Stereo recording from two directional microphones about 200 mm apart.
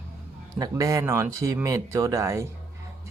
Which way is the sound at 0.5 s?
15° right (ahead or behind).